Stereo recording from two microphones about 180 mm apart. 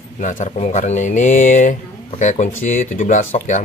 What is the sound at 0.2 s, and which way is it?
Speech, 45° left (ahead or behind).